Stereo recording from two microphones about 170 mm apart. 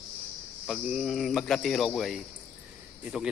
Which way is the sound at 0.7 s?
Centre (ahead or behind).